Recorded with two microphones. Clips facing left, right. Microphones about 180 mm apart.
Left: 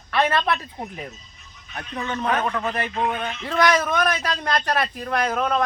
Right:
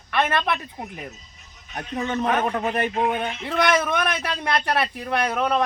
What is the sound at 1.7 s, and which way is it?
Speech, 30° right (ahead or behind).